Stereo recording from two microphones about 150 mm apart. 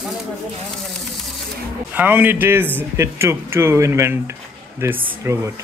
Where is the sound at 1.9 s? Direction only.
10° right (ahead or behind).